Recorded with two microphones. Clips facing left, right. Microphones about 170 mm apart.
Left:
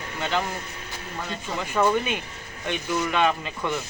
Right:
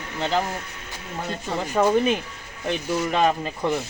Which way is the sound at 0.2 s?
35° right (ahead or behind).